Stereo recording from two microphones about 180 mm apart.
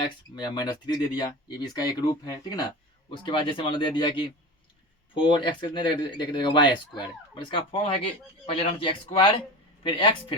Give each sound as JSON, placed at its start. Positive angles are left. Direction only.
{"t": 0.3, "sound": "speech", "side_deg": 25}